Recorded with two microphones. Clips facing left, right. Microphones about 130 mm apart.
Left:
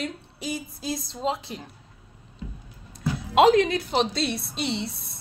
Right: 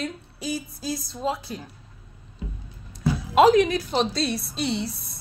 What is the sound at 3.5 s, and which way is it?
A woman's voice, 25° left (ahead or behind).